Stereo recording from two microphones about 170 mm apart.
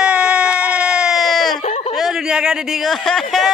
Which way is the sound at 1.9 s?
Centre (ahead or behind).